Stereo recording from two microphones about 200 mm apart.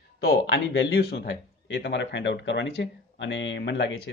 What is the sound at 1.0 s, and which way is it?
Speech, 50° left (ahead or behind).